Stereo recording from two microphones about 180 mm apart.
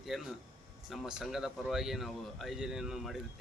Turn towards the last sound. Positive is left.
turn(degrees=0)  # may be behind; listen again after turning